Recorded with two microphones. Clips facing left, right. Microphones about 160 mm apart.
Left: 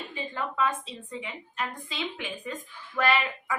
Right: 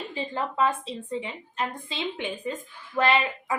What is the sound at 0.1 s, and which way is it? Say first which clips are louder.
A woman's voice: right 3 dB; 30° right (ahead or behind).